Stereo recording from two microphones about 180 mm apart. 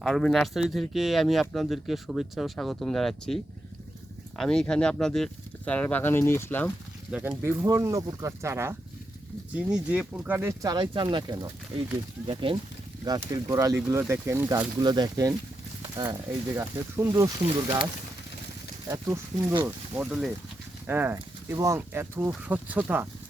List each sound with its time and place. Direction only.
0.0 s speech: centre (ahead or behind)
7.1 s speech: 10° right (ahead or behind)
12.3 s speech: 30° right (ahead or behind); by 14.7 s 10° right (ahead or behind)
14.8 s speech: 25° right (ahead or behind)
18.9 s speech: 15° right (ahead or behind)